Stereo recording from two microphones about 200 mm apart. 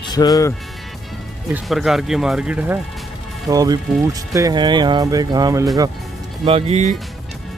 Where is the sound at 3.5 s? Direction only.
20° right (ahead or behind).